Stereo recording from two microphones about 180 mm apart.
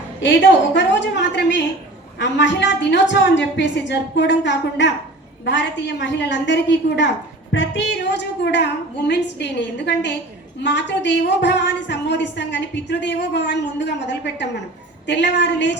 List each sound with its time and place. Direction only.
0.2 s a woman's voice: 75° left (ahead or behind)